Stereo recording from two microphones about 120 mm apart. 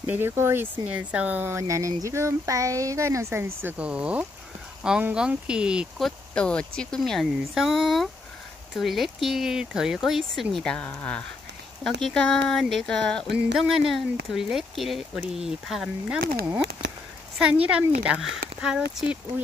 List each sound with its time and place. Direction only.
0.0 s speech: 15° right (ahead or behind)
17.6 s speech: 10° right (ahead or behind)